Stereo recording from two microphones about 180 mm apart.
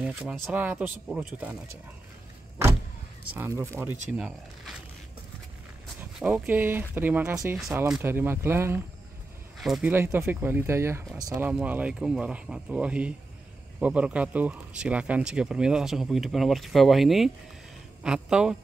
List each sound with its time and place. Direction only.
0.0 s speech: 5° right (ahead or behind)
3.3 s speech: 15° right (ahead or behind)
5.9 s speech: 5° right (ahead or behind)
9.6 s speech: centre (ahead or behind)
9.8 s speech: 10° right (ahead or behind)
11.4 s speech: 10° right (ahead or behind)